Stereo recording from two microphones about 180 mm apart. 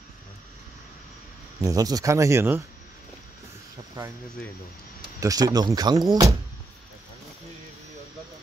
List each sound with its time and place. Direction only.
1.6 s speech: 20° right (ahead or behind)
4.0 s speech: 25° right (ahead or behind)
5.2 s speech: 20° right (ahead or behind)